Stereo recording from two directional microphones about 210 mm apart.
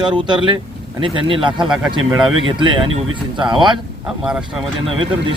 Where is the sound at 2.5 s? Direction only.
25° right (ahead or behind).